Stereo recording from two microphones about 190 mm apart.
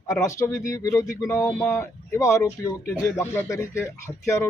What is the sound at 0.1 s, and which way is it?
Speech, 15° left (ahead or behind).